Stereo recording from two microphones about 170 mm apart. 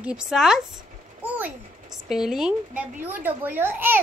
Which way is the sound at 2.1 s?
5° right (ahead or behind).